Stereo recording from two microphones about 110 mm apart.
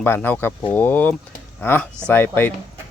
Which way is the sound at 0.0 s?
15° left (ahead or behind).